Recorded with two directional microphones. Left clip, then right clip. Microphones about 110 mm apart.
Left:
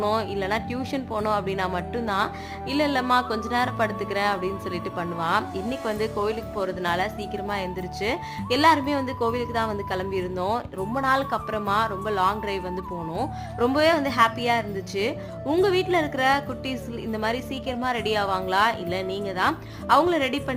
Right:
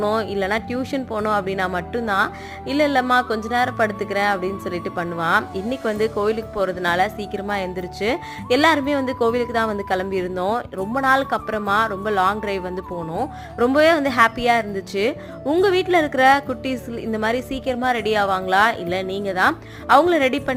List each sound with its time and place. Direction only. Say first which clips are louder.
0.0 s a woman's voice: right 4 dB; 30° right (ahead or behind); by 20.4 s 45° right (ahead or behind)